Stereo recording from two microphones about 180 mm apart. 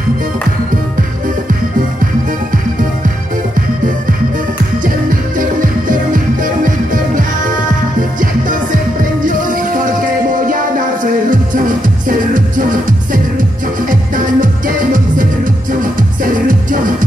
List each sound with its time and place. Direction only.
4.8 s music: 50° right (ahead or behind)
12.1 s music: 50° right (ahead or behind)